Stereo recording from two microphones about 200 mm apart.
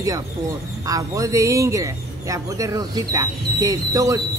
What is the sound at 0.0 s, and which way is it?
Speech, 15° right (ahead or behind).